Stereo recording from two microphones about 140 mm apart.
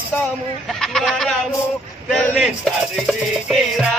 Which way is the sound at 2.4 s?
Centre (ahead or behind).